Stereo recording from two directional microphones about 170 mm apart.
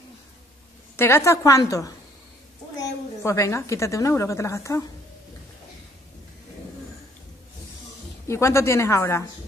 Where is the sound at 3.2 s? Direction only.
15° left (ahead or behind).